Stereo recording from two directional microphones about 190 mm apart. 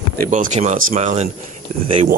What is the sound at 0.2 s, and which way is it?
Speech, 45° right (ahead or behind).